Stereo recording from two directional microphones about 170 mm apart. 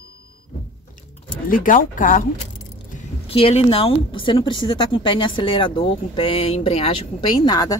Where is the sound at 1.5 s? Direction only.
55° left (ahead or behind).